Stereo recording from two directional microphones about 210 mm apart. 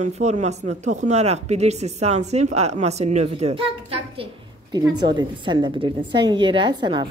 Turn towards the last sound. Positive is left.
turn(degrees=-25)  # may be behind; listen again after turning